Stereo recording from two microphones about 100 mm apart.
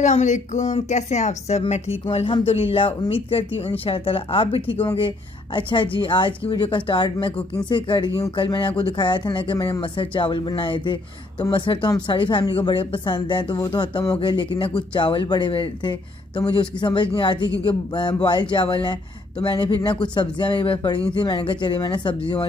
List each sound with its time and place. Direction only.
1.5 s speech: 85° left
4.9 s speech: 60° left (ahead or behind)
14.1 s speech: 60° left (ahead or behind)